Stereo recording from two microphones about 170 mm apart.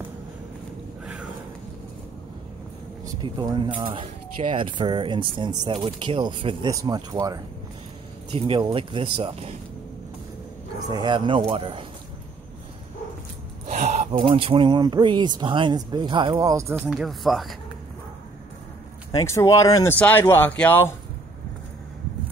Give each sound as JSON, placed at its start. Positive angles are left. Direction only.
{"t": 3.2, "sound": "speech", "side_deg": -25}
{"t": 8.4, "sound": "speech", "side_deg": -35}
{"t": 10.9, "sound": "speech", "side_deg": -25}
{"t": 13.7, "sound": "speech", "side_deg": -45}
{"t": 16.9, "sound": "speech", "side_deg": 0}
{"t": 19.1, "sound": "speech", "side_deg": 20}